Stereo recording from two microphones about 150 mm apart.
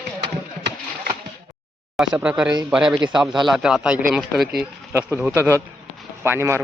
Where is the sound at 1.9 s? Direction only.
5° right (ahead or behind).